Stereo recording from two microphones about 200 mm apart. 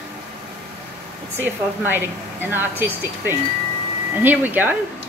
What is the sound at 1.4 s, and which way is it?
A woman's voice, 10° right (ahead or behind).